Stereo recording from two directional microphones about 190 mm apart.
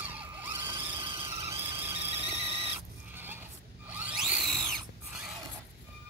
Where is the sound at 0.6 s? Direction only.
25° right (ahead or behind).